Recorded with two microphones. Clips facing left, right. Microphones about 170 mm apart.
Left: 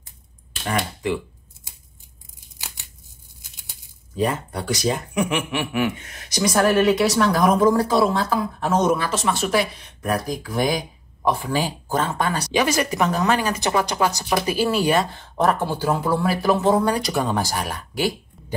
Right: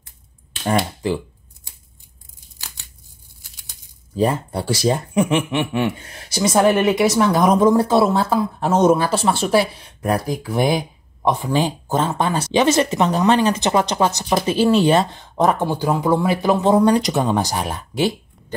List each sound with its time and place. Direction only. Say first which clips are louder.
0.7 s speech: right 4 dB; 30° right (ahead or behind)
4.2 s speech: right 4 dB; 30° right (ahead or behind)